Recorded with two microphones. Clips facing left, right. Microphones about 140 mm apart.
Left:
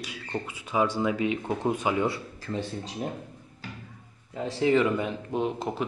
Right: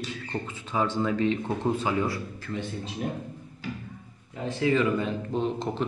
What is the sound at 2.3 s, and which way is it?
Speech, 35° left (ahead or behind).